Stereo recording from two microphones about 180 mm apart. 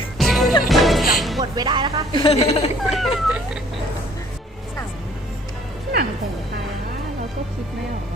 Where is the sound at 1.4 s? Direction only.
25° right (ahead or behind).